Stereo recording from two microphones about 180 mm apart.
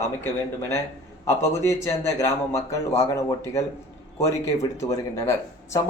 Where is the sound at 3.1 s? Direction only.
15° left (ahead or behind).